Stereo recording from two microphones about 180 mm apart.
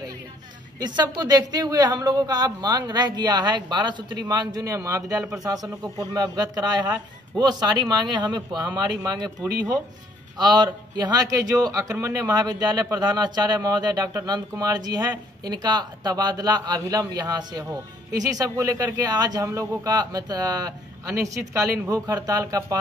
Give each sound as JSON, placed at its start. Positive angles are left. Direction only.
{"t": 0.7, "sound": "a woman's voice", "side_deg": -25}
{"t": 10.3, "sound": "a man's voice", "side_deg": -25}